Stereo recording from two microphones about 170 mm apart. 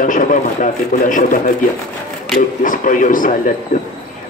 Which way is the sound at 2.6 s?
50° left (ahead or behind).